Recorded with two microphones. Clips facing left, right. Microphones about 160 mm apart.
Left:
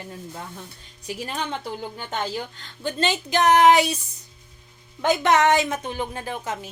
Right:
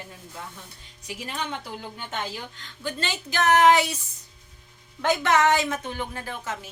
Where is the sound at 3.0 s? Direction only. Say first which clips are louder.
Left 6 dB; 20° left (ahead or behind).